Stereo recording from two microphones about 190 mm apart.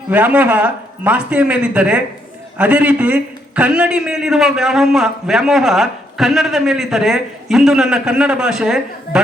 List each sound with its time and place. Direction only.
0.1 s a man's voice: 10° right (ahead or behind)